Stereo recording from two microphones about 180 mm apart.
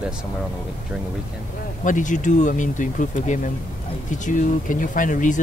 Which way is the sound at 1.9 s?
45° left (ahead or behind).